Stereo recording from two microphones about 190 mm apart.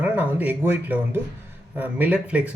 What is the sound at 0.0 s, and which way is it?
Speech, 10° right (ahead or behind).